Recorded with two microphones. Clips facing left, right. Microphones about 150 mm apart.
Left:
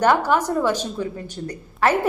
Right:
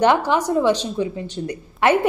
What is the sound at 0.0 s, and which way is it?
Speech, 20° right (ahead or behind).